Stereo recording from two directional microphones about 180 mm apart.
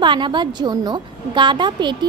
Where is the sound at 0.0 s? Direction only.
25° right (ahead or behind).